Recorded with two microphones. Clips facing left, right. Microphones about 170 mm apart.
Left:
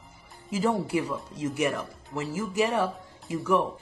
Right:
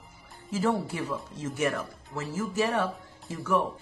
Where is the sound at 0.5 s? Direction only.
15° left (ahead or behind).